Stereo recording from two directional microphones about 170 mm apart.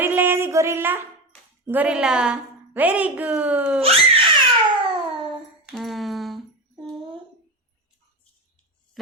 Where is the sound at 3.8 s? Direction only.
35° right (ahead or behind).